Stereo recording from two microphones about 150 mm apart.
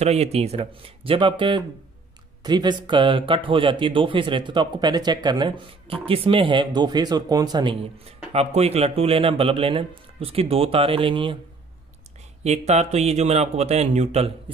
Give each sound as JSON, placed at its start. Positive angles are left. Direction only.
{"t": 0.0, "sound": "speech", "side_deg": -45}
{"t": 8.3, "sound": "speech", "side_deg": -45}
{"t": 12.4, "sound": "speech", "side_deg": -50}